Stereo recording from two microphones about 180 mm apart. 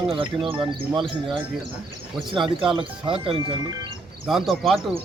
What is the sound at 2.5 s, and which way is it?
Speech, 30° right (ahead or behind).